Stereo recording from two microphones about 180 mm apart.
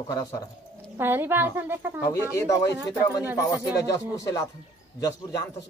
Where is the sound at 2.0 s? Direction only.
15° left (ahead or behind).